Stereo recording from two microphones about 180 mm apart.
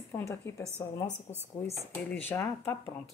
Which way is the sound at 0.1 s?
15° left (ahead or behind).